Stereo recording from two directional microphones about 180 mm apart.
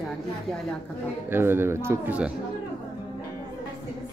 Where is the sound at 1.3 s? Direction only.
10° right (ahead or behind).